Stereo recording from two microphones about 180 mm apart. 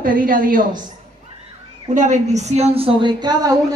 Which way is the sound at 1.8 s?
40° right (ahead or behind).